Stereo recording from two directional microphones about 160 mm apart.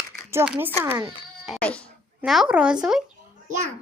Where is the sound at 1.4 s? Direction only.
5° left (ahead or behind).